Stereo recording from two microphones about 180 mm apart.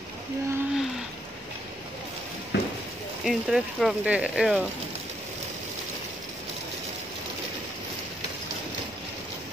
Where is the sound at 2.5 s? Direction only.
75° left (ahead or behind).